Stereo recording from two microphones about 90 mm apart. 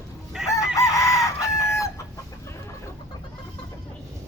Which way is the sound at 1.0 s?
35° left (ahead or behind).